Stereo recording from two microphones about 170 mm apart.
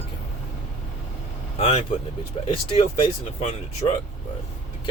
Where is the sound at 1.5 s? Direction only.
35° left (ahead or behind).